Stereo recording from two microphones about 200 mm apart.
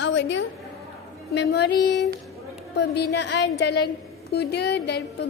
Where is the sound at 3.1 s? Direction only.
60° left (ahead or behind).